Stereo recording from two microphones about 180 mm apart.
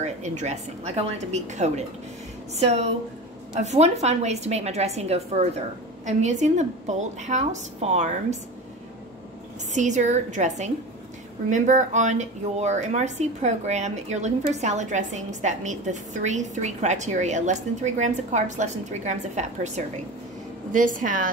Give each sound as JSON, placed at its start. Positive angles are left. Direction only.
{"t": 0.0, "sound": "a woman's voice", "side_deg": -40}
{"t": 9.7, "sound": "a woman's voice", "side_deg": -40}